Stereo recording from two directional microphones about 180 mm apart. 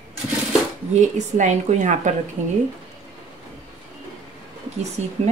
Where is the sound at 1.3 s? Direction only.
40° right (ahead or behind).